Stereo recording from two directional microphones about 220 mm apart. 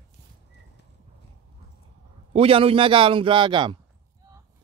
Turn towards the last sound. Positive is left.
turn(degrees=-20)  # may be behind; listen again after turning